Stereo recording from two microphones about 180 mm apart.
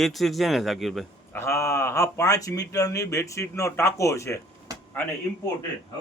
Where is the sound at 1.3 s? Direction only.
15° left (ahead or behind).